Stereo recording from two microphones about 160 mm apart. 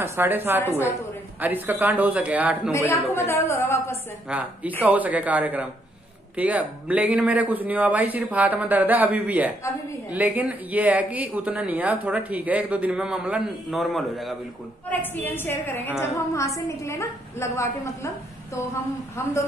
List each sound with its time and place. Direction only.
0.0 s speech: 15° right (ahead or behind)
2.7 s a woman's voice: 15° left (ahead or behind)
4.3 s speech: 10° right (ahead or behind)
14.9 s a woman's voice: 10° left (ahead or behind)